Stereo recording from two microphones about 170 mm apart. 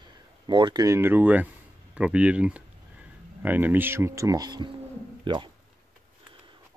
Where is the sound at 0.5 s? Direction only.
25° right (ahead or behind).